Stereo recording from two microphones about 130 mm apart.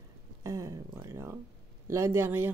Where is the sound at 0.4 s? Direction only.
25° right (ahead or behind).